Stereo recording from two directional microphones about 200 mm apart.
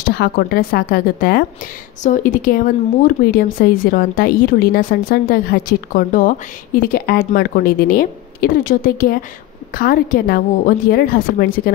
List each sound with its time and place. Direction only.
0.1 s speech: 50° left (ahead or behind)